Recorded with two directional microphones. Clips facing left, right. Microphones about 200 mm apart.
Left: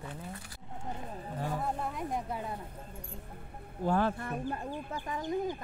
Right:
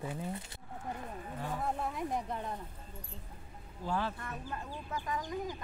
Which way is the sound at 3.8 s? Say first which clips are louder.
Left 7 dB; 50° left (ahead or behind).